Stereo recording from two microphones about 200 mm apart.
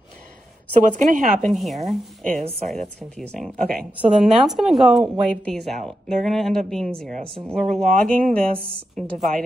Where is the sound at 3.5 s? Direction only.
45° right (ahead or behind).